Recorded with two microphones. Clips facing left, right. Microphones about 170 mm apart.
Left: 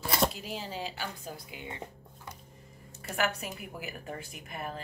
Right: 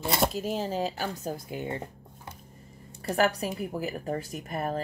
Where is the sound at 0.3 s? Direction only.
40° right (ahead or behind).